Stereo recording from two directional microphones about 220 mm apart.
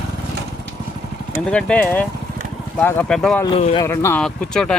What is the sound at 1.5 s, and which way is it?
Speech, 5° left (ahead or behind).